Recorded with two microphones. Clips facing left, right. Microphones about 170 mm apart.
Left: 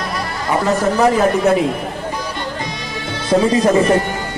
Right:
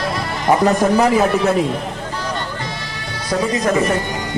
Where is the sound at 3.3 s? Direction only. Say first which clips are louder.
Left 6 dB; 30° left (ahead or behind).